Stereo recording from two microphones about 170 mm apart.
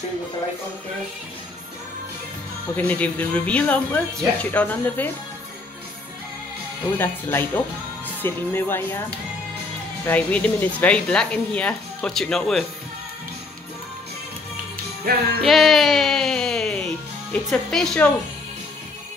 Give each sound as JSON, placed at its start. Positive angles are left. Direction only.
{"t": 2.7, "sound": "speech", "side_deg": 10}
{"t": 7.0, "sound": "speech", "side_deg": 15}
{"t": 10.0, "sound": "speech", "side_deg": 10}
{"t": 15.1, "sound": "music", "side_deg": -65}
{"t": 15.4, "sound": "music", "side_deg": 0}
{"t": 17.3, "sound": "speech", "side_deg": 5}